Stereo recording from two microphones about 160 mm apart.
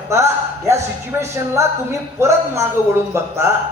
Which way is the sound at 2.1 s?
15° right (ahead or behind).